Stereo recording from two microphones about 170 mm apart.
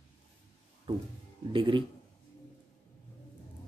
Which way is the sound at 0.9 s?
30° right (ahead or behind).